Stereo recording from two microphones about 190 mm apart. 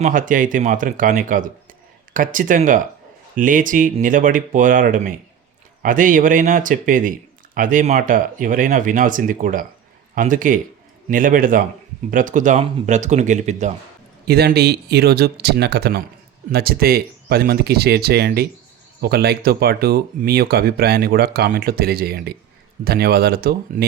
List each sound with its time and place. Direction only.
0.0 s speech: 45° right (ahead or behind)
14.3 s speech: 55° right (ahead or behind)